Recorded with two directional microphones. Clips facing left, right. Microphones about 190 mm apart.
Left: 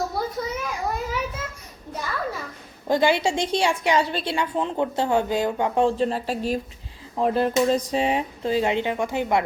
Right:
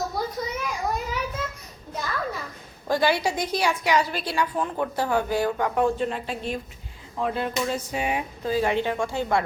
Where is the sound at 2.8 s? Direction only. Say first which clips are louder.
Left 2 dB; 20° left (ahead or behind).